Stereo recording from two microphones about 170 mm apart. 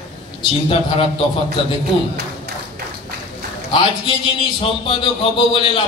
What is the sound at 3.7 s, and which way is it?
A man's voice, 30° left (ahead or behind).